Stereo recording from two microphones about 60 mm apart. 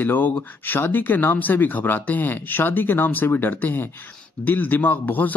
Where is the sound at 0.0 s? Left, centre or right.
Left.